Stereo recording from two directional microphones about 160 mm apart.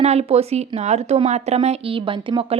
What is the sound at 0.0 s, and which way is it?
Speech, 40° right (ahead or behind).